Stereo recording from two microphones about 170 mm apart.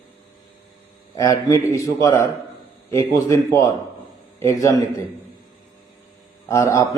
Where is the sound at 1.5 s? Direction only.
20° left (ahead or behind).